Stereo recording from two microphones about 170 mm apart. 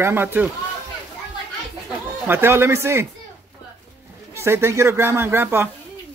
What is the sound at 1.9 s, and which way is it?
Speech, 10° right (ahead or behind).